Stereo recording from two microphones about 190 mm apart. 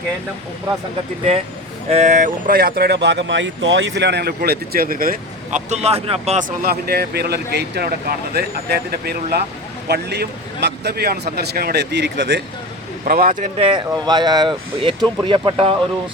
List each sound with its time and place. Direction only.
1.9 s speech: 40° right (ahead or behind)
6.6 s speech: 55° right (ahead or behind)
13.1 s speech: 50° right (ahead or behind)
13.6 s speech: 25° right (ahead or behind)